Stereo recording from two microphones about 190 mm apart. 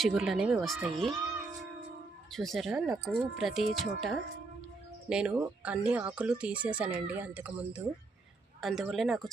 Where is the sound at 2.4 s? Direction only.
Centre (ahead or behind).